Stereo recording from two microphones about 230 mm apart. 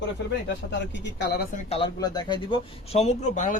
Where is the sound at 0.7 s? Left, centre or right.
Left.